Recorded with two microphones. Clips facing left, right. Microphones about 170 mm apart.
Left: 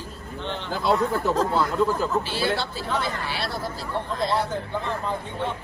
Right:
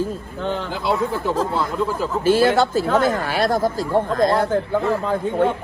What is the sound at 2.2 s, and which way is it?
Speech, 50° right (ahead or behind).